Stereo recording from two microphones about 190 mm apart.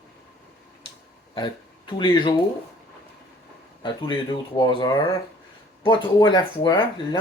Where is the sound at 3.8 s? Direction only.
25° left (ahead or behind).